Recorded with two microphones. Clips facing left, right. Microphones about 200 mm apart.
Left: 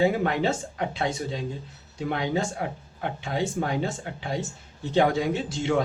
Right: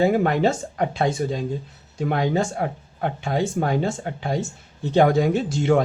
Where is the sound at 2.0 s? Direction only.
45° right (ahead or behind).